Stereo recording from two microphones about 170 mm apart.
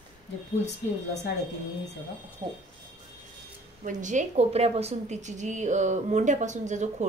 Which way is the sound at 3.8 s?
45° right (ahead or behind).